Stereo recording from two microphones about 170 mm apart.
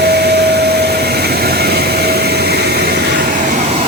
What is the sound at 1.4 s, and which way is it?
Vehicle, 70° right (ahead or behind).